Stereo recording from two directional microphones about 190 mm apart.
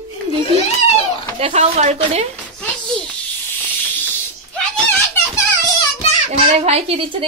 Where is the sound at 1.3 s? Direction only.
35° right (ahead or behind).